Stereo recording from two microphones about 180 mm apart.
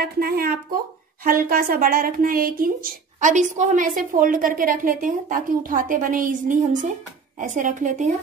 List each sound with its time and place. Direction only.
0.0 s a woman's voice: 60° right (ahead or behind)